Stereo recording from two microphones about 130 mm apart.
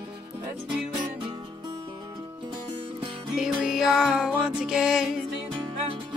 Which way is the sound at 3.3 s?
5° right (ahead or behind).